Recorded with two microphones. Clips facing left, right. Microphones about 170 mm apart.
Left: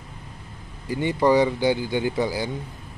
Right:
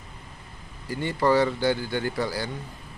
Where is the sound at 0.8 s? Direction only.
15° left (ahead or behind).